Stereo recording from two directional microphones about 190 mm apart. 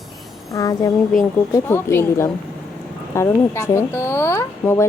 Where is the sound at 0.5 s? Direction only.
20° left (ahead or behind).